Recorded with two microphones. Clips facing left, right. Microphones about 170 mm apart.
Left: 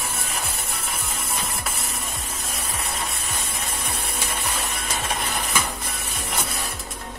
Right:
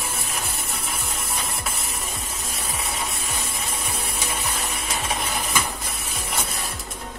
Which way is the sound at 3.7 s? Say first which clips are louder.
Even; centre (ahead or behind).